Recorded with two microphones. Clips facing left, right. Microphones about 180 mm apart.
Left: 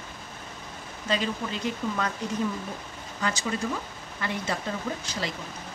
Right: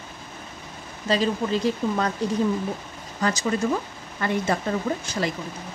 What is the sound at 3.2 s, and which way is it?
Speech, 40° right (ahead or behind).